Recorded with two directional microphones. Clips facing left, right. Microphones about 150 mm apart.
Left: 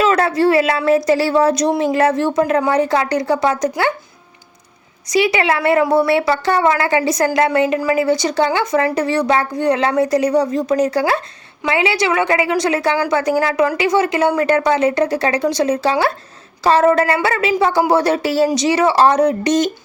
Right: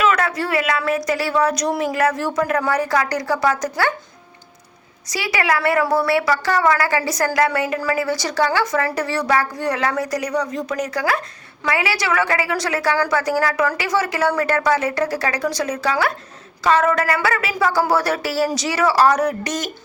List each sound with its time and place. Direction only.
0.0 s a woman's voice: 30° left (ahead or behind)
5.0 s a woman's voice: 20° left (ahead or behind)